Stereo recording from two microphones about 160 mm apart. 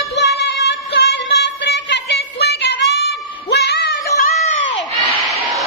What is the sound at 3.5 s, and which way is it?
Music, 90° left.